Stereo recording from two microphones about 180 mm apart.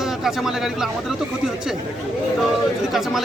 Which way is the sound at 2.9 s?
Centre (ahead or behind).